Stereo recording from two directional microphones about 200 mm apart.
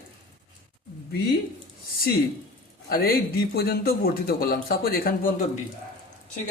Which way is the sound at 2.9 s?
50° left (ahead or behind).